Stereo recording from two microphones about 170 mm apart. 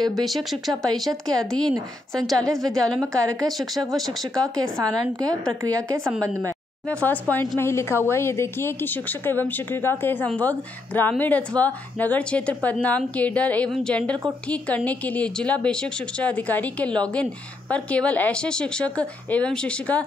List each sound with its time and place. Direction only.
0.0 s speech: centre (ahead or behind)
4.7 s speech: 20° right (ahead or behind)
6.9 s a woman's voice: 10° left (ahead or behind)